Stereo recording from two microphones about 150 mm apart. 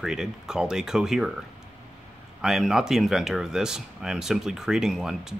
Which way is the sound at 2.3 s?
5° right (ahead or behind).